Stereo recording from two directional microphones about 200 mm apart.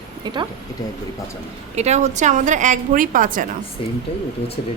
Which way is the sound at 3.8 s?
25° left (ahead or behind).